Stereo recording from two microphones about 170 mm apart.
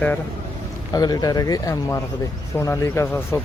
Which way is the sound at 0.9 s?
25° left (ahead or behind).